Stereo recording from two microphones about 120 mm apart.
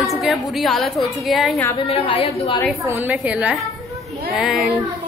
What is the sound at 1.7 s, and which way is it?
Speech, 55° left (ahead or behind).